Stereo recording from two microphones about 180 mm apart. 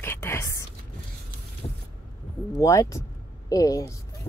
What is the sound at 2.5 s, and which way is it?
A child's voice, 15° left (ahead or behind).